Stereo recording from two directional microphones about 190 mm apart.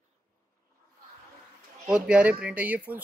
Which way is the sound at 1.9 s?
5° right (ahead or behind).